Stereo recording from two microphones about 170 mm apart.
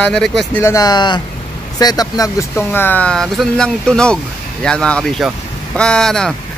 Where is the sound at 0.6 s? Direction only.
20° left (ahead or behind).